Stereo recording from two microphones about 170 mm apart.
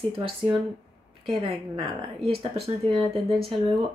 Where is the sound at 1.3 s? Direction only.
35° right (ahead or behind).